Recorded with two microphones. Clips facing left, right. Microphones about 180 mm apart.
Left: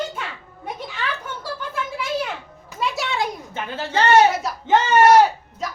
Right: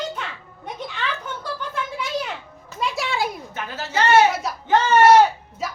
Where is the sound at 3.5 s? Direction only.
30° left (ahead or behind).